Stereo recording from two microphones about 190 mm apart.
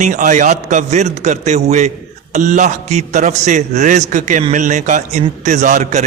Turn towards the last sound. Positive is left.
turn(degrees=-40)  # may be behind; listen again after turning